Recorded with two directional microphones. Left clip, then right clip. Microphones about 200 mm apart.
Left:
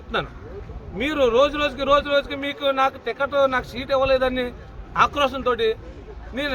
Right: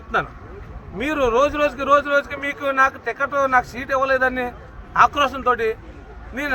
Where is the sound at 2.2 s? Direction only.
5° left (ahead or behind).